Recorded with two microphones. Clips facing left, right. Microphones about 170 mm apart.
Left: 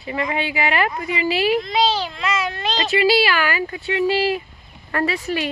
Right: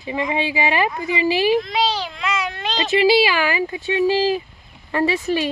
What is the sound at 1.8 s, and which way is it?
A child's voice, 10° right (ahead or behind).